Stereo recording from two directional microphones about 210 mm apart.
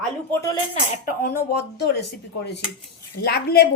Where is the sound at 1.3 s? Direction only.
50° left (ahead or behind).